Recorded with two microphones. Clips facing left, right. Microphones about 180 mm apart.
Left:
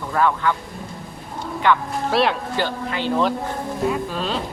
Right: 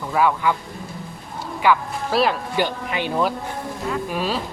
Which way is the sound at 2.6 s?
15° right (ahead or behind).